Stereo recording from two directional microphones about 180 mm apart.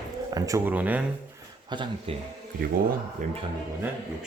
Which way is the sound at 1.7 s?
25° right (ahead or behind).